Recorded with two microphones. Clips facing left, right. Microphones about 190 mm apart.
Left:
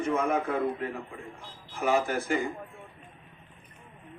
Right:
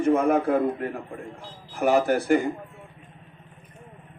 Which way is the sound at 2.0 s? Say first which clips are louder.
Right 8 dB; 70° right (ahead or behind).